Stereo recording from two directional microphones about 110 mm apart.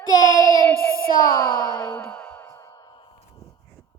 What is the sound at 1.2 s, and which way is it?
Speech, 35° left (ahead or behind).